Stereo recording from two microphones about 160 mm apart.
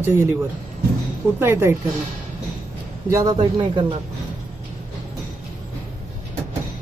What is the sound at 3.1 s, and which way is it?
Speech, 20° right (ahead or behind).